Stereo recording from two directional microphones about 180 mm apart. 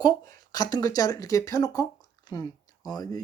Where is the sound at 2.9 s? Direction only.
20° left (ahead or behind).